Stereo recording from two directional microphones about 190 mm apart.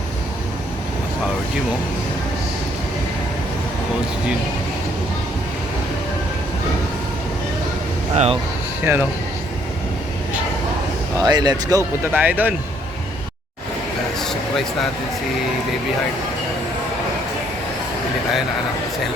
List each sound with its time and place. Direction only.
8.1 s speech: 35° right (ahead or behind)
8.8 s speech: 10° right (ahead or behind)
11.2 s speech: 20° right (ahead or behind)
12.1 s speech: 10° right (ahead or behind)
14.2 s a sound: centre (ahead or behind)